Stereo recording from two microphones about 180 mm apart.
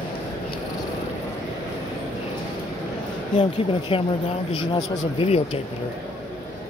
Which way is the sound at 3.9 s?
30° left (ahead or behind).